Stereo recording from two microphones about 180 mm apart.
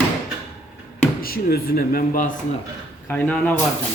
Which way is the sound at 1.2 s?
55° left (ahead or behind).